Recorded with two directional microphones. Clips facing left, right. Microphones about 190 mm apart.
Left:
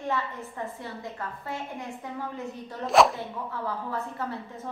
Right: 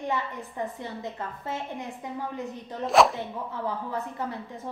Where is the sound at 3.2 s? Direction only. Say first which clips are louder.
Right 1 dB; 15° right (ahead or behind).